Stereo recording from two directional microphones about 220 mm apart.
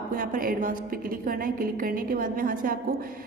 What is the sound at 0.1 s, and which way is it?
A woman's voice, 40° right (ahead or behind).